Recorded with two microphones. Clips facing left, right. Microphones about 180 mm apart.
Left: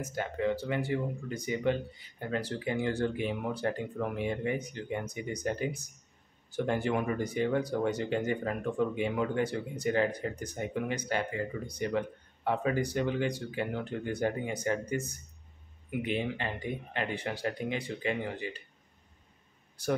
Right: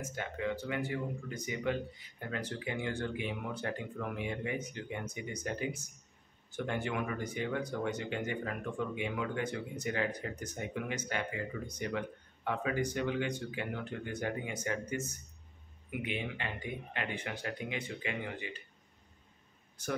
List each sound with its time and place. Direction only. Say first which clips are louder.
0.0 s speech: left 5 dB; 35° left (ahead or behind)